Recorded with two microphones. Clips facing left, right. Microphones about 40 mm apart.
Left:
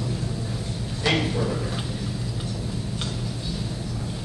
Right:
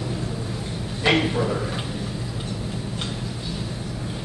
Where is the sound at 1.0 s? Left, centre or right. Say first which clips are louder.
Right 3 dB; right.